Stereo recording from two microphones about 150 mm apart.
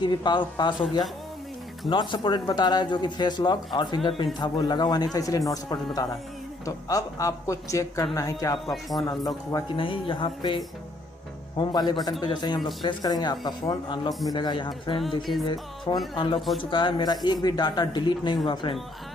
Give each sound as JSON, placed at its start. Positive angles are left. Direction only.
{"t": 0.0, "sound": "speech", "side_deg": 30}
{"t": 1.9, "sound": "speech", "side_deg": 30}
{"t": 9.8, "sound": "speech", "side_deg": 35}